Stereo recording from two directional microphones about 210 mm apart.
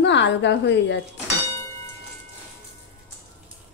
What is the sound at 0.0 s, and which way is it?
Speech, 55° left (ahead or behind).